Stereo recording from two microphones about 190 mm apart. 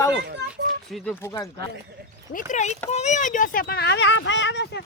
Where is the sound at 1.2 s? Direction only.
20° left (ahead or behind).